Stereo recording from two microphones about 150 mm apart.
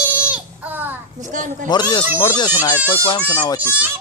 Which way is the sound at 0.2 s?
10° right (ahead or behind).